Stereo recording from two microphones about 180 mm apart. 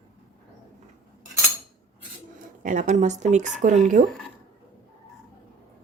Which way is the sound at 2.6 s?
45° right (ahead or behind).